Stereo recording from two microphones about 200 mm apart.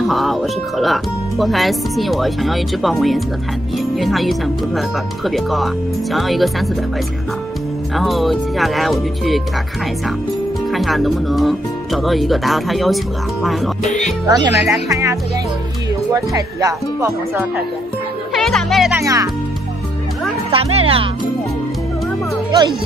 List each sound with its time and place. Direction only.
0.0 s speech: centre (ahead or behind)
7.9 s speech: centre (ahead or behind)
10.7 s speech: centre (ahead or behind)
14.2 s speech: 20° right (ahead or behind)
18.3 s music: centre (ahead or behind)
18.9 s speech: 15° right (ahead or behind)
20.5 s speech: 30° right (ahead or behind)